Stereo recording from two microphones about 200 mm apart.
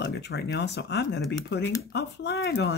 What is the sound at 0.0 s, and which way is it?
Speech, 60° left (ahead or behind).